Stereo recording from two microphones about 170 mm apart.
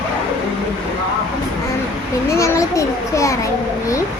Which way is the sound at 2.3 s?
15° left (ahead or behind).